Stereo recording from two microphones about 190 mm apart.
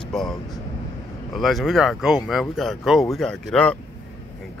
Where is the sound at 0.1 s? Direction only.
Centre (ahead or behind).